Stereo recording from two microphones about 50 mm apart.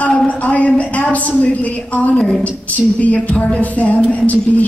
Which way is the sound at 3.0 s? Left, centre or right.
Left.